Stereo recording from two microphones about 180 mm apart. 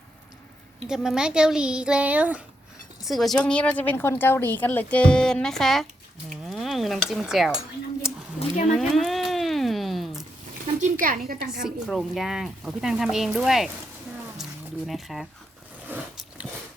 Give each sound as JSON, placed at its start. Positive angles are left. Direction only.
{"t": 0.9, "sound": "speech", "side_deg": -5}
{"t": 6.5, "sound": "dishes", "side_deg": 0}
{"t": 8.0, "sound": "a sound", "side_deg": -5}
{"t": 11.0, "sound": "a woman's voice", "side_deg": -50}
{"t": 11.6, "sound": "speech", "side_deg": 0}
{"t": 14.8, "sound": "speech", "side_deg": 0}
{"t": 15.9, "sound": "biting", "side_deg": -5}